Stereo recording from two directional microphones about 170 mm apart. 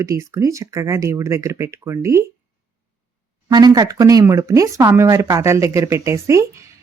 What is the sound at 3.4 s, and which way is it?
Speech, 20° right (ahead or behind).